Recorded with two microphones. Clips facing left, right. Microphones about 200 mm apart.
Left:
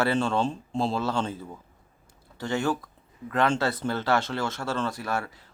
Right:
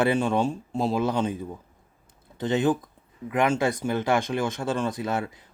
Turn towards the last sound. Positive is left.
turn(degrees=-20)  # may be behind; listen again after turning